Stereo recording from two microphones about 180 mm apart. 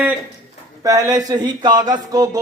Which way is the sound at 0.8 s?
20° right (ahead or behind).